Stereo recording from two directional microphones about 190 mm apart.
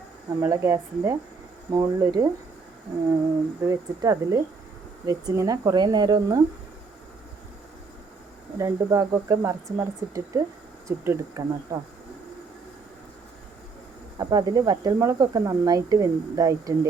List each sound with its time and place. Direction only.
0.4 s speech: 15° right (ahead or behind)
3.6 s speech: 15° right (ahead or behind)
8.5 s speech: 15° right (ahead or behind)
14.2 s speech: 20° right (ahead or behind)